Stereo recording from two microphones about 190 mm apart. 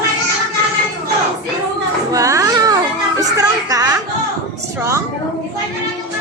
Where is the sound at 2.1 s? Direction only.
15° right (ahead or behind).